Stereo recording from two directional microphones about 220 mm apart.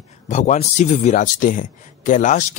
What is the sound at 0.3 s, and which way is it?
Speech, 35° left (ahead or behind).